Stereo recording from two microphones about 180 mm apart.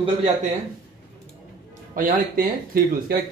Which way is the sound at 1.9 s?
55° right (ahead or behind).